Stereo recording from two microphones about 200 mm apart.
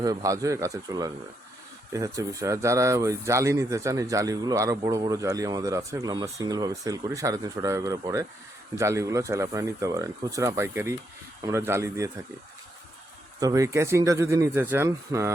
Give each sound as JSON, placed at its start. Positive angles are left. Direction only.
{"t": 0.0, "sound": "speech", "side_deg": -15}
{"t": 13.4, "sound": "speech", "side_deg": -15}